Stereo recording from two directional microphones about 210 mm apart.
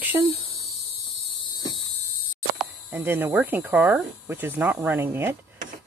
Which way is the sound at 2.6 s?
10° right (ahead or behind).